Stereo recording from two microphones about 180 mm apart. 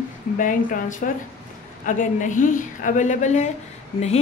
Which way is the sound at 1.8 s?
45° left (ahead or behind).